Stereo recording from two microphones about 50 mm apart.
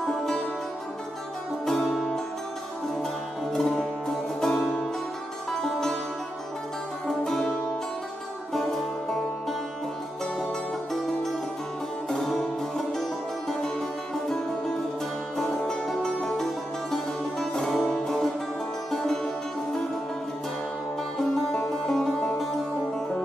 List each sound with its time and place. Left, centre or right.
0.0 s music: centre
1.7 s music: centre
3.5 s music: centre
5.6 s music: centre
7.1 s music: centre
8.5 s music: centre
12.1 s music: centre
21.8 s music: centre